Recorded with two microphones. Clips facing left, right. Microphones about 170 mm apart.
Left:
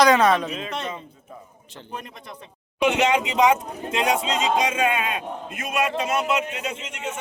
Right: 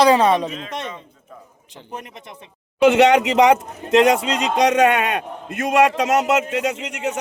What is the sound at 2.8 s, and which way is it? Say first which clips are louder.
A man's voice: right 7 dB; 85° right.